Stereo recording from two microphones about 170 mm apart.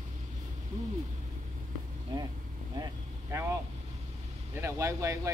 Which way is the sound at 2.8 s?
15° right (ahead or behind).